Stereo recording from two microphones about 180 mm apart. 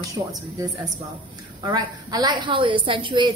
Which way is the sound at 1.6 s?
20° right (ahead or behind).